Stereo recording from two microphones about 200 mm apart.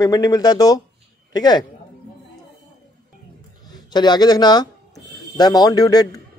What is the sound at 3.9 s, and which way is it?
A man's voice, 20° left (ahead or behind).